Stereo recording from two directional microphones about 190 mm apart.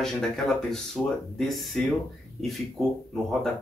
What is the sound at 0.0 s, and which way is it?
Speech, centre (ahead or behind).